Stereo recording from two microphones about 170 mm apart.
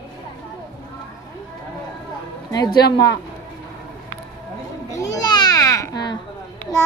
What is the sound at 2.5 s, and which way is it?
Speech, 25° left (ahead or behind).